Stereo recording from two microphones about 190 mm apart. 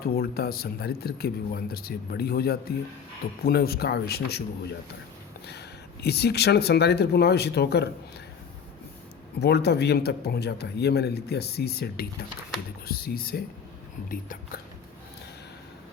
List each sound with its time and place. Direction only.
0.0 s speech: 55° left (ahead or behind)
9.4 s speech: 60° left (ahead or behind)